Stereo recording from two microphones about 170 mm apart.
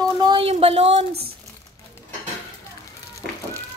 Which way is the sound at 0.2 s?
30° right (ahead or behind).